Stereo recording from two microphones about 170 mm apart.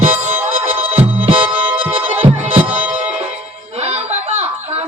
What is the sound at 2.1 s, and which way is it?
Music, 35° right (ahead or behind).